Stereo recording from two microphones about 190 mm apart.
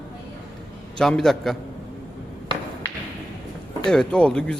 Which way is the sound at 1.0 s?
Centre (ahead or behind).